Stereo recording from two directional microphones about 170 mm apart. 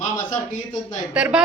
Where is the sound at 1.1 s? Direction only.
5° right (ahead or behind).